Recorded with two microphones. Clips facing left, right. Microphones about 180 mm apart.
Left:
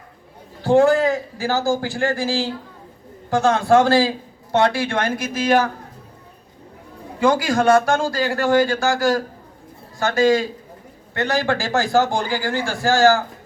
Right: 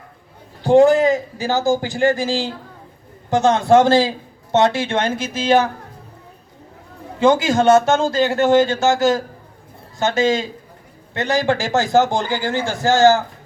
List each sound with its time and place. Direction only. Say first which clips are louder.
0.6 s a man's voice: right 3 dB; 20° right (ahead or behind)
7.2 s a man's voice: right 3 dB; 25° right (ahead or behind)